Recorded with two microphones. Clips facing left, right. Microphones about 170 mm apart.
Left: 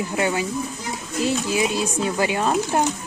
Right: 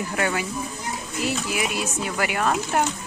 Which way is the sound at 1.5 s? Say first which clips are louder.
Left 5 dB; 25° left (ahead or behind).